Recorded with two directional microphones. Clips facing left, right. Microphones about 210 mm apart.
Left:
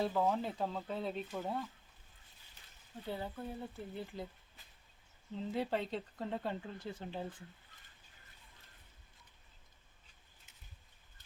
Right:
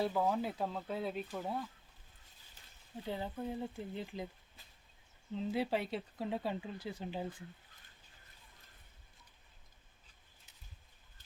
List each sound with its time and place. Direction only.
0.0 s speech: 5° right (ahead or behind)
3.1 s speech: 15° right (ahead or behind)
5.5 s speech: 10° right (ahead or behind)